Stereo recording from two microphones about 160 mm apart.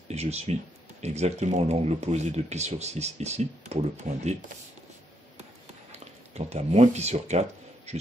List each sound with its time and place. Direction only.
0.1 s speech: 40° right (ahead or behind)
5.9 s speech: 40° right (ahead or behind)